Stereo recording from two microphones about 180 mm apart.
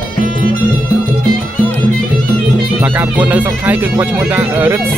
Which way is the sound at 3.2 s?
10° right (ahead or behind).